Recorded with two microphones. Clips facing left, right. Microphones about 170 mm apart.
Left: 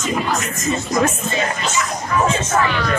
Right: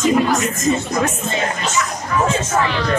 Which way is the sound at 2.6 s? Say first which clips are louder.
Right 1 dB; 30° right (ahead or behind).